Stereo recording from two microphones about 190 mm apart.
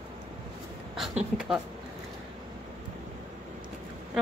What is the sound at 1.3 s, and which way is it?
Speech, centre (ahead or behind).